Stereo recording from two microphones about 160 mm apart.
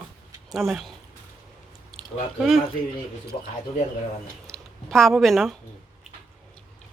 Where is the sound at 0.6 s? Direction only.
Centre (ahead or behind).